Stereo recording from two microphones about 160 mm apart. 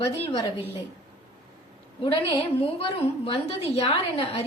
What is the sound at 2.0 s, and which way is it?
A woman's voice, 35° left (ahead or behind).